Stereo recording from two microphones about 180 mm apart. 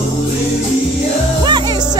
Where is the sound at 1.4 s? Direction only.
25° right (ahead or behind).